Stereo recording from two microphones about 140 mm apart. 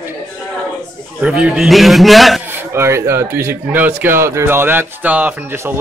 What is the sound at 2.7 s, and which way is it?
Speech, 20° right (ahead or behind).